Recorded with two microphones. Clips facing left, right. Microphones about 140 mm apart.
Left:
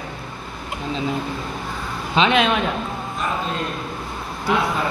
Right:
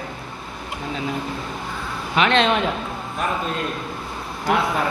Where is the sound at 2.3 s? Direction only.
5° left (ahead or behind).